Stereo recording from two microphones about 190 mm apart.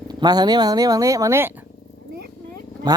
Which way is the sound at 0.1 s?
20° right (ahead or behind).